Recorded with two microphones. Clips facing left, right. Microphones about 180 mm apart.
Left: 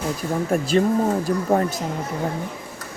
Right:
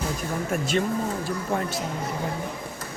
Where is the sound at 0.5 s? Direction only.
35° left (ahead or behind).